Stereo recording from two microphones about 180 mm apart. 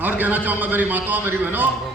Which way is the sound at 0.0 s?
10° right (ahead or behind).